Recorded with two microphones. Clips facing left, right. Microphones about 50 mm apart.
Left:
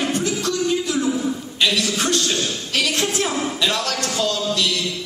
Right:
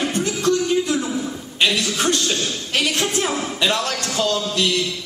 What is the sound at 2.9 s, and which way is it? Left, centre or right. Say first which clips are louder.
Mantra: even; right.